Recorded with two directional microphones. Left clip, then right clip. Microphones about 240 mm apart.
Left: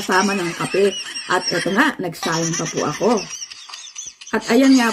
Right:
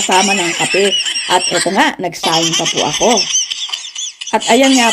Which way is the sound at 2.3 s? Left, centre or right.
Right.